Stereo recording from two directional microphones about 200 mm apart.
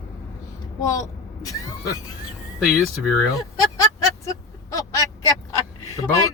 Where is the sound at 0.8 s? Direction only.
15° left (ahead or behind).